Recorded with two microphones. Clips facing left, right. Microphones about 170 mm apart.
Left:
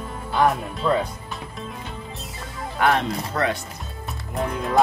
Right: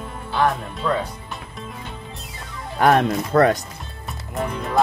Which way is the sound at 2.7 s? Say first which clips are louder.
Right 4 dB; 45° right (ahead or behind).